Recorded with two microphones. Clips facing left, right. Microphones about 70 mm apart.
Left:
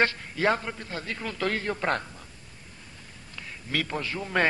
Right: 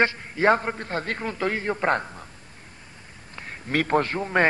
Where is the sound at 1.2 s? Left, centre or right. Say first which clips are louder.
Even; right.